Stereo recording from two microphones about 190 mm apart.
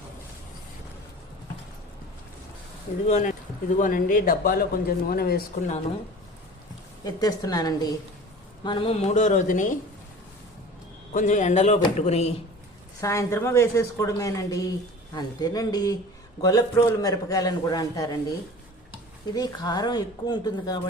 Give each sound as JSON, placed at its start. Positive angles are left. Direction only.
{"t": 3.1, "sound": "speech", "side_deg": 40}
{"t": 7.0, "sound": "a man's voice", "side_deg": 20}
{"t": 11.1, "sound": "speech", "side_deg": 40}
{"t": 13.0, "sound": "a woman's voice", "side_deg": 15}
{"t": 19.3, "sound": "a man's voice", "side_deg": 20}